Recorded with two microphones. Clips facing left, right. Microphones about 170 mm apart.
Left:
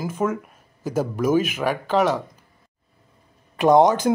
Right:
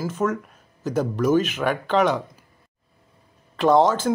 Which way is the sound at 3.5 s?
15° left (ahead or behind).